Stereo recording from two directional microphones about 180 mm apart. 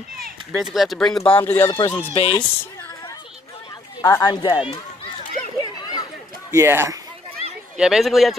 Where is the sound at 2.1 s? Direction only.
30° left (ahead or behind).